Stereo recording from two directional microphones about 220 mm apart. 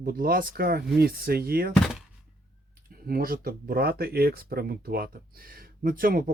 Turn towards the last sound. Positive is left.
turn(degrees=-40)  # may be behind; listen again after turning